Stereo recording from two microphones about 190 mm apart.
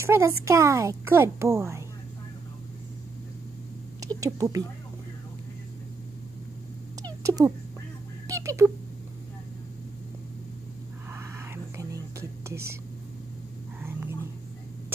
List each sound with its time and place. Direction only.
0.0 s a child's voice: 15° right (ahead or behind)
4.0 s speech: 20° right (ahead or behind)
7.0 s cat: 20° right (ahead or behind)
8.3 s speech: 15° right (ahead or behind)
11.1 s whispering: 15° right (ahead or behind)